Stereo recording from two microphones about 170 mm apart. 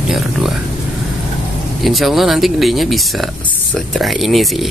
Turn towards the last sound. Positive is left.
turn(degrees=0)  # may be behind; listen again after turning